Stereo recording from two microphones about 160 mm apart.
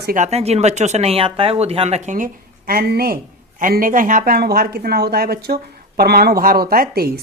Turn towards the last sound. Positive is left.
turn(degrees=-70)  # may be behind; listen again after turning